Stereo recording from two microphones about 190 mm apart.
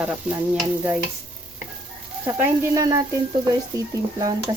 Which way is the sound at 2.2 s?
20° right (ahead or behind).